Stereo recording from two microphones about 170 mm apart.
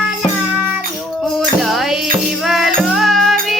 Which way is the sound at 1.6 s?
Centre (ahead or behind).